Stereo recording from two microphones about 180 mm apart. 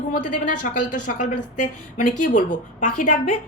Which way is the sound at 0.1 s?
45° left (ahead or behind).